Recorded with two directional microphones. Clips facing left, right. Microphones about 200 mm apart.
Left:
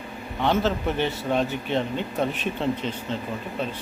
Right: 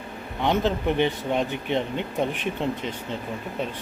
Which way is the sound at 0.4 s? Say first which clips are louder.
Even; 15° right (ahead or behind).